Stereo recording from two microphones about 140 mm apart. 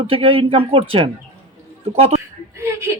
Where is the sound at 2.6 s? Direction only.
20° right (ahead or behind).